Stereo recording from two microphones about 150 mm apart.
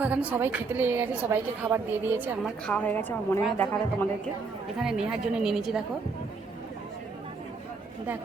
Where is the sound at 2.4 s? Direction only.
5° left (ahead or behind).